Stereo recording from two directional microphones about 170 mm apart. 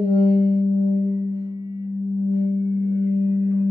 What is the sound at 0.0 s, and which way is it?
Music, 30° left (ahead or behind).